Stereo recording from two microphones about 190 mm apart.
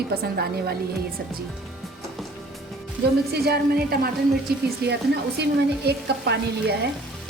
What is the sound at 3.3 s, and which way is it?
Speech, 55° right (ahead or behind).